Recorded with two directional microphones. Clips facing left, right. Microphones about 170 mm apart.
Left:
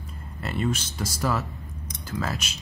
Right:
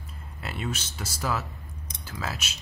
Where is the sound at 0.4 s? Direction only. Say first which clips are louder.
Left 6 dB; 5° right (ahead or behind).